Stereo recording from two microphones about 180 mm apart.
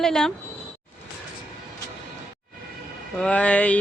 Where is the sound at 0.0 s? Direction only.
Centre (ahead or behind).